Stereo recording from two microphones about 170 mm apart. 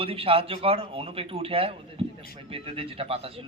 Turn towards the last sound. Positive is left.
turn(degrees=-35)  # may be behind; listen again after turning